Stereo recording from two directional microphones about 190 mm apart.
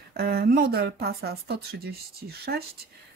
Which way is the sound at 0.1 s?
55° right (ahead or behind).